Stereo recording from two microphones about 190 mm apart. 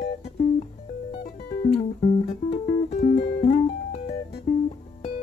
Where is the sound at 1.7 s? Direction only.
35° left (ahead or behind).